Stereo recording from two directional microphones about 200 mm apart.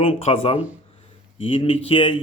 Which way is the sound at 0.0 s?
30° left (ahead or behind).